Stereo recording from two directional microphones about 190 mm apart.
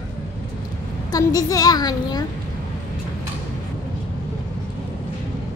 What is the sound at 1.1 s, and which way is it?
A woman's voice, 20° left (ahead or behind).